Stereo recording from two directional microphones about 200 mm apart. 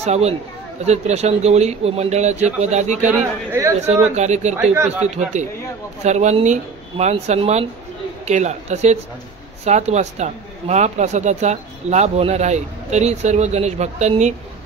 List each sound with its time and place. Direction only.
0.0 s a woman's voice: 35° right (ahead or behind)
3.1 s speech: 15° right (ahead or behind)
3.8 s a woman's voice: 35° right (ahead or behind)
4.7 s speech: 10° right (ahead or behind)
5.0 s a woman's voice: 35° right (ahead or behind)